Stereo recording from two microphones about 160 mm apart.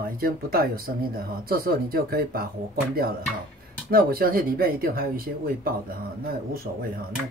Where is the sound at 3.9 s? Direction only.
70° right (ahead or behind).